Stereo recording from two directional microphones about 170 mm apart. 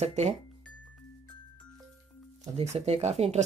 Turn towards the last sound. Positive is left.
turn(degrees=-40)  # may be behind; listen again after turning